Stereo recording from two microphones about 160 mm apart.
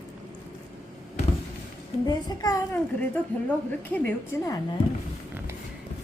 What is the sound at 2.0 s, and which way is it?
Speech, 25° left (ahead or behind).